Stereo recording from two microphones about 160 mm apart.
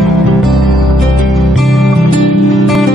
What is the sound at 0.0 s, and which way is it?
Music, centre (ahead or behind).